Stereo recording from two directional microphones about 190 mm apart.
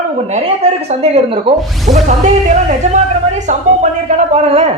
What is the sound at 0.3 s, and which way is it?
Speech, 35° right (ahead or behind).